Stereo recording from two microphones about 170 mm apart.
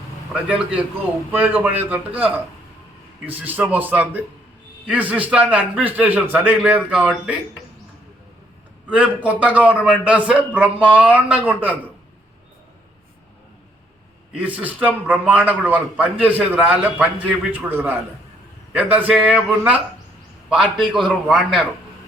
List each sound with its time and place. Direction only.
0.4 s a man's voice: 5° right (ahead or behind)
8.9 s a man's voice: 10° right (ahead or behind)
14.3 s a man's voice: 10° right (ahead or behind)